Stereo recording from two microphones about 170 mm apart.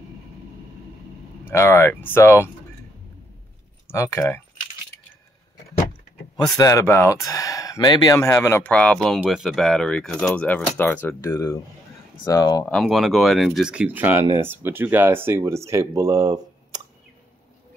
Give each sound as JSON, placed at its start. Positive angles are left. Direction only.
{"t": 1.5, "sound": "speech", "side_deg": 15}
{"t": 3.9, "sound": "speech", "side_deg": 15}
{"t": 6.3, "sound": "speech", "side_deg": 20}
{"t": 12.6, "sound": "speech", "side_deg": 0}